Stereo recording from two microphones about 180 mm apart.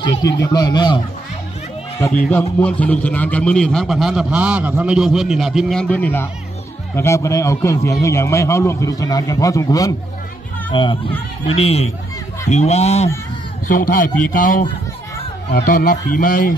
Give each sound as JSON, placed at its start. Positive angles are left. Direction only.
{"t": 0.4, "sound": "speech", "side_deg": 20}
{"t": 2.0, "sound": "a man's voice", "side_deg": 15}
{"t": 13.7, "sound": "a man's voice", "side_deg": 50}